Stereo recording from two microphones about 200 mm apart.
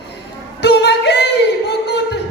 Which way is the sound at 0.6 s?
55° left (ahead or behind).